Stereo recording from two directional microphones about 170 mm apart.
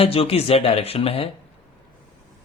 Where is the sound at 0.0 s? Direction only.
35° left (ahead or behind).